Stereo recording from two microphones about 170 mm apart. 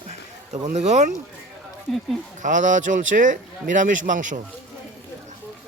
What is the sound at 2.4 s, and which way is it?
Speech, 50° right (ahead or behind).